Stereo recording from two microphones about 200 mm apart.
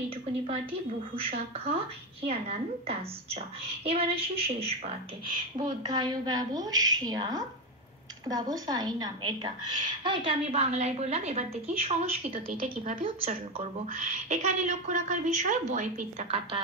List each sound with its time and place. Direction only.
1.3 s speech: 30° right (ahead or behind)
5.9 s a woman's voice: 20° right (ahead or behind); by 13.0 s 45° right (ahead or behind)
13.0 s a woman's voice: 30° right (ahead or behind)